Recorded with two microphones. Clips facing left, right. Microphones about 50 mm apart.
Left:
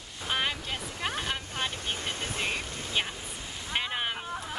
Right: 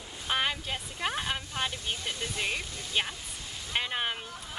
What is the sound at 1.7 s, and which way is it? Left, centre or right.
Speech, left.